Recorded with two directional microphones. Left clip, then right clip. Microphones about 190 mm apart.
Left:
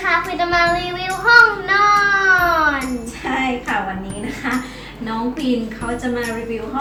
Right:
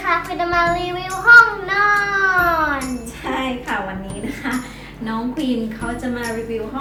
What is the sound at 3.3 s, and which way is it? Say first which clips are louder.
Music: left 2 dB; 35° right (ahead or behind).